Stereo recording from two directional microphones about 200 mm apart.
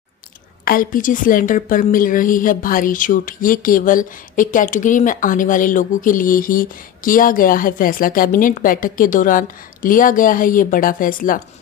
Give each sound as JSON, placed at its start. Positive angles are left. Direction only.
{"t": 0.7, "sound": "a woman's voice", "side_deg": 45}